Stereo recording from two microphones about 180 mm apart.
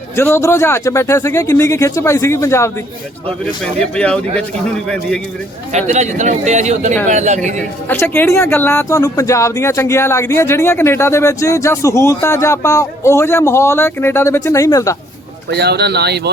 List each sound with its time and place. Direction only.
0.2 s speech: 15° left (ahead or behind)
3.4 s a man's voice: 5° left (ahead or behind)
5.7 s a man's voice: 40° right (ahead or behind)
7.9 s speech: 10° left (ahead or behind)
15.4 s speech: 65° right (ahead or behind)